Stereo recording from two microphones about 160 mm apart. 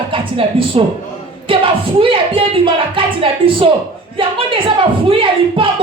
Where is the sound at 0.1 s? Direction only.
35° right (ahead or behind).